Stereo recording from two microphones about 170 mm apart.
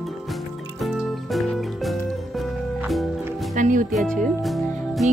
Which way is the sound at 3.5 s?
50° right (ahead or behind).